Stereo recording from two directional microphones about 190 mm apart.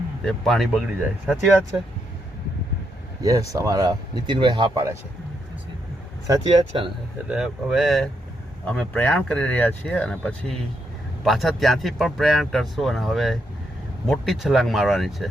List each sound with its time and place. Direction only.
0.3 s speech: centre (ahead or behind)
3.2 s speech: 20° right (ahead or behind)
6.2 s speech: 25° right (ahead or behind)
7.3 s speech: 5° right (ahead or behind)